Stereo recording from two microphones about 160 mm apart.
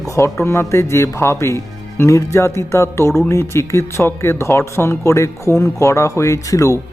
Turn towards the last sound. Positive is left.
turn(degrees=20)  # may be behind; listen again after turning